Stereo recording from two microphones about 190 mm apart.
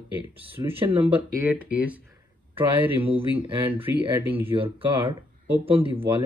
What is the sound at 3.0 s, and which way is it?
Speech, 30° right (ahead or behind).